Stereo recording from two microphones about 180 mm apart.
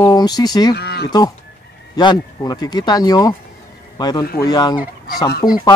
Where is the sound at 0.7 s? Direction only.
65° left (ahead or behind).